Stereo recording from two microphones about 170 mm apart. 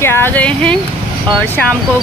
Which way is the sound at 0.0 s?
15° left (ahead or behind).